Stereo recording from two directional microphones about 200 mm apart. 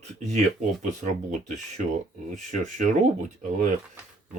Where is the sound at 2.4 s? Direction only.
35° right (ahead or behind).